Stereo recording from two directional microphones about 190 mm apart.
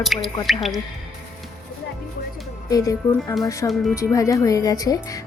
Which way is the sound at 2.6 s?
20° left (ahead or behind).